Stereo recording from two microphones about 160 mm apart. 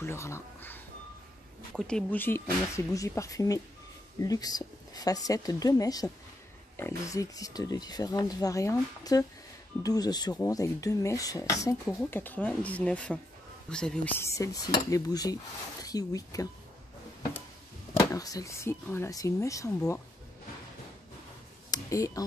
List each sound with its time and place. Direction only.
0.0 s speech: 15° left (ahead or behind)
1.7 s speech: centre (ahead or behind); by 16.4 s 20° left (ahead or behind)
18.1 s speech: 20° left (ahead or behind)
21.6 s a sound: 20° left (ahead or behind)